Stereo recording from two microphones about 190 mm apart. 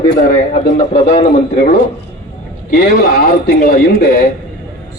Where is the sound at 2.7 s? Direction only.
55° left (ahead or behind).